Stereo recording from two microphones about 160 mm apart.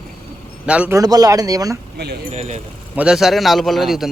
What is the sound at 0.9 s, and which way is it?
Speech, 25° right (ahead or behind).